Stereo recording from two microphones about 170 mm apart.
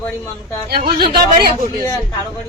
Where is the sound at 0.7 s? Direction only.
60° right (ahead or behind).